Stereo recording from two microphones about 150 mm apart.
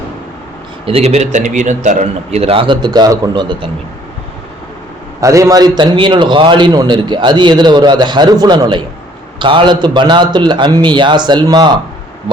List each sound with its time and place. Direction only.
0.9 s a man's voice: 45° right (ahead or behind)
5.2 s a man's voice: 20° right (ahead or behind)